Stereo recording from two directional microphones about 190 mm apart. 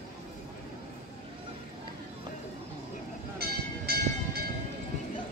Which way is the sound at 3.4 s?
55° right (ahead or behind).